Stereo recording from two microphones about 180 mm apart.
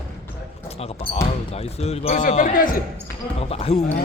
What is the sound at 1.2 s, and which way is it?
Speech, 35° left (ahead or behind).